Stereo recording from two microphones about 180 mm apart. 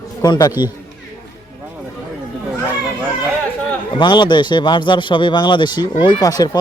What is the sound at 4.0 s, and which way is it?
A man's voice, 25° left (ahead or behind).